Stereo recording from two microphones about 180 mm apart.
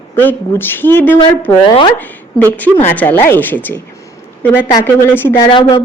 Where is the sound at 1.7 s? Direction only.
25° left (ahead or behind).